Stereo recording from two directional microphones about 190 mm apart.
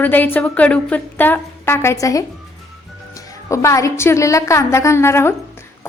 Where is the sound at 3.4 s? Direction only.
15° left (ahead or behind).